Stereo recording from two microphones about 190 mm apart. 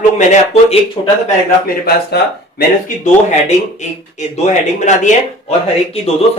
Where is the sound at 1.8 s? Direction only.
55° left (ahead or behind).